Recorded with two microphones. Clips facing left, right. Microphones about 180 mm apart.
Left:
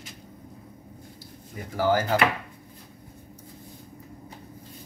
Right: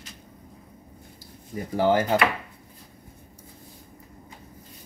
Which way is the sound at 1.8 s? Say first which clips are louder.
Right 2 dB; 25° right (ahead or behind).